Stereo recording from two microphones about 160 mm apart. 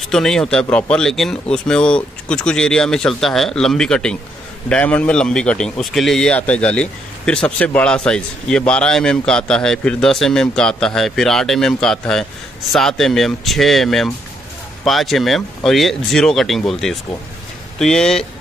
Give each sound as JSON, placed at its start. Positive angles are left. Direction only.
{"t": 0.1, "sound": "a man's voice", "side_deg": 5}